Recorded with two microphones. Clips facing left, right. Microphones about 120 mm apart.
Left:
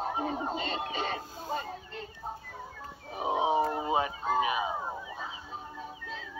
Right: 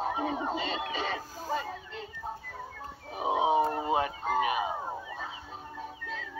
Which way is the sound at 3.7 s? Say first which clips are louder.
Right 1 dB; 55° right (ahead or behind).